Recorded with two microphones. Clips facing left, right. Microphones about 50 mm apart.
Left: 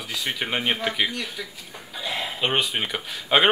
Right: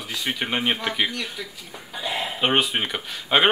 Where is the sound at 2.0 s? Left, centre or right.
Centre.